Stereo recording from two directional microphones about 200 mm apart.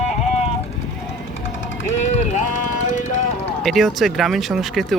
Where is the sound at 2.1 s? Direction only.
35° left (ahead or behind).